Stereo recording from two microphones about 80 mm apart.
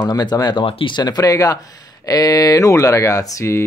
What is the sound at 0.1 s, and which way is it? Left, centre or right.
Speech, left.